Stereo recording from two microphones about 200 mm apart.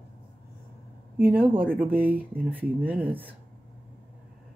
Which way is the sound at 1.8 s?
10° right (ahead or behind).